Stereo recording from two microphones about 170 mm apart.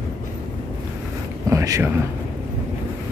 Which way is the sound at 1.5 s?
20° right (ahead or behind).